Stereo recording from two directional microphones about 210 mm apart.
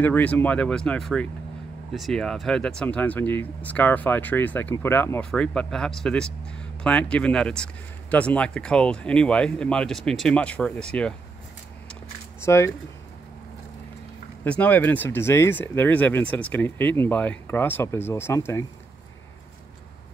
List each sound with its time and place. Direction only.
0.0 s speech: 5° left (ahead or behind)
12.4 s speech: 15° left (ahead or behind)
14.4 s speech: 5° left (ahead or behind)